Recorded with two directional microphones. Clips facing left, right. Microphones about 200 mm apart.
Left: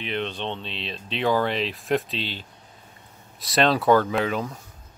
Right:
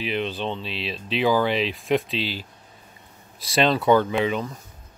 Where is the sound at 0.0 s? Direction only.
5° right (ahead or behind).